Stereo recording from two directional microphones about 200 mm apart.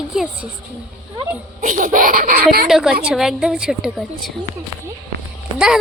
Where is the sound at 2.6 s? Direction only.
Centre (ahead or behind).